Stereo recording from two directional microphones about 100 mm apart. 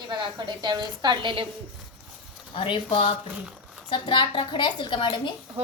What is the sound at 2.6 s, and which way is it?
Speech, 60° left (ahead or behind).